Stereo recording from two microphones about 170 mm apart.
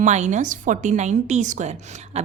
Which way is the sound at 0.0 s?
45° right (ahead or behind).